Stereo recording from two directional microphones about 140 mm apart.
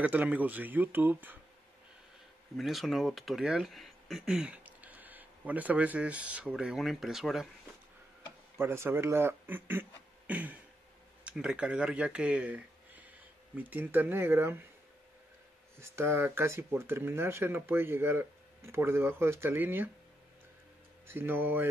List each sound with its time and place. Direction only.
0.0 s speech: 10° right (ahead or behind)
2.5 s speech: centre (ahead or behind)
8.5 s speech: 15° right (ahead or behind)
15.8 s speech: 20° right (ahead or behind)
21.1 s speech: 15° right (ahead or behind)